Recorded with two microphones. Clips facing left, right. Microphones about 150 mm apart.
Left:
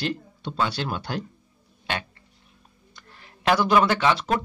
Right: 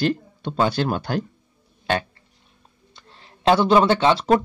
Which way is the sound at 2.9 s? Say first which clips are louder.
Right 1 dB; 25° right (ahead or behind).